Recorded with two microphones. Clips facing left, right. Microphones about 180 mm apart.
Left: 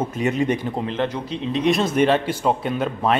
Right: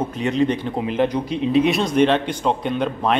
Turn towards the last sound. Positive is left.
turn(degrees=5)  # may be behind; listen again after turning